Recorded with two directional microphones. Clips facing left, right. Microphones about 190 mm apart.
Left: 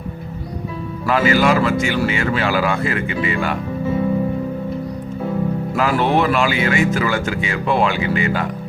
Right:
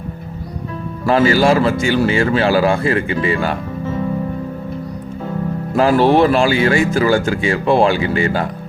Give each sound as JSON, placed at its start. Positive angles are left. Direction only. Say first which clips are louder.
{"t": 1.0, "sound": "speech", "louder": "right 3 dB", "side_deg": -30}
{"t": 5.7, "sound": "speech", "louder": "right 6 dB", "side_deg": -30}